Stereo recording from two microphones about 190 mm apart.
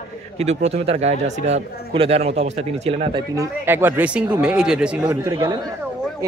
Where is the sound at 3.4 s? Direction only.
10° right (ahead or behind).